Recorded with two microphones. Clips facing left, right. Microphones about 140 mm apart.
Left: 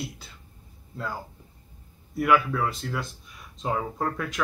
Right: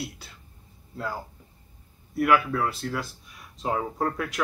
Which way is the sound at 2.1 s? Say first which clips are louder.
Even; 5° right (ahead or behind).